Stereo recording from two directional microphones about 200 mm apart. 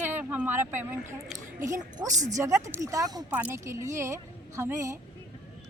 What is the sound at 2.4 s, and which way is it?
A woman's voice, 15° right (ahead or behind).